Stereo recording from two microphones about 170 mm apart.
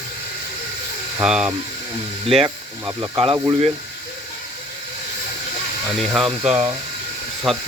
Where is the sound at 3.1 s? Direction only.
30° right (ahead or behind).